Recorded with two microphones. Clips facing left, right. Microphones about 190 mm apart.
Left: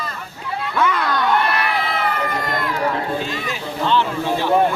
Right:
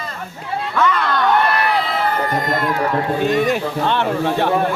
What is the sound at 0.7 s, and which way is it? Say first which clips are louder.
Speech: right 2 dB; 10° left (ahead or behind).